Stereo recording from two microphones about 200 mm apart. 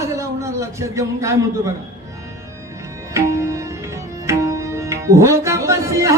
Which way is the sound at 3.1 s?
15° right (ahead or behind).